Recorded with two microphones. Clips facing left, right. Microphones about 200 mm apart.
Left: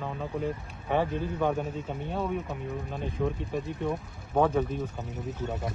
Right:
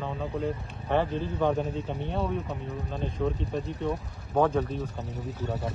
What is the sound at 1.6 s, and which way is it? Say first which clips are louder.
Speech: right 2 dB; 35° right (ahead or behind).